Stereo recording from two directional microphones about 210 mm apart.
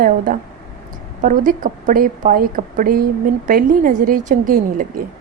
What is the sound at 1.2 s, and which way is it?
A woman's voice, 40° right (ahead or behind).